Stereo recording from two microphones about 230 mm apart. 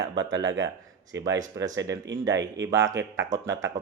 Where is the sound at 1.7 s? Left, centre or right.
Right.